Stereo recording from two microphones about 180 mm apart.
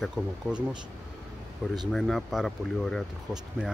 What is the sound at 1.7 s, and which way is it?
Speech, centre (ahead or behind).